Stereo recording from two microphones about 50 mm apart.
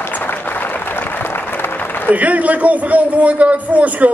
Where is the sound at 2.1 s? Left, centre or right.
Right.